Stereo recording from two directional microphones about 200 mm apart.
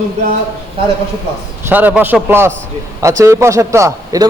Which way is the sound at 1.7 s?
10° right (ahead or behind).